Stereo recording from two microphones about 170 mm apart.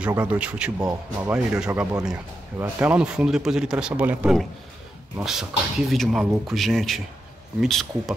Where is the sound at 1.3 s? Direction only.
5° right (ahead or behind).